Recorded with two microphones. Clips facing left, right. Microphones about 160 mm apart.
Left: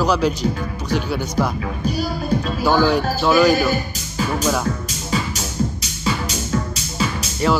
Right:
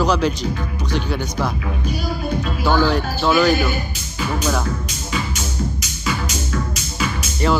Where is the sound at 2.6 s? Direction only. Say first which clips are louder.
Left 1 dB; 10° left (ahead or behind).